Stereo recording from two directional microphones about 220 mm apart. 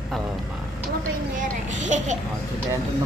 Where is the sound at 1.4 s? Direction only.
35° right (ahead or behind).